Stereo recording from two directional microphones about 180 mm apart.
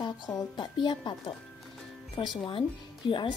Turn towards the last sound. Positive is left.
turn(degrees=25)  # may be behind; listen again after turning